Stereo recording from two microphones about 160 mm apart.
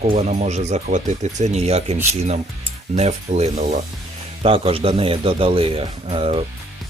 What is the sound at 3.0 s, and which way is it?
Speech, 45° right (ahead or behind).